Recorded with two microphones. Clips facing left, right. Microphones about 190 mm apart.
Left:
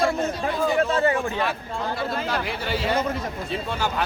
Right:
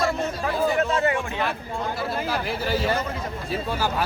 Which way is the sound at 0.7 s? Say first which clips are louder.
Left 2 dB; 30° left (ahead or behind).